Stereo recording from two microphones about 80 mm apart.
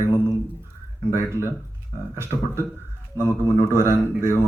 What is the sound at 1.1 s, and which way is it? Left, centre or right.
Speech, right.